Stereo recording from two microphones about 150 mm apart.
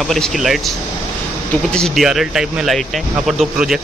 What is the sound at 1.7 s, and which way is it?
Speech, centre (ahead or behind).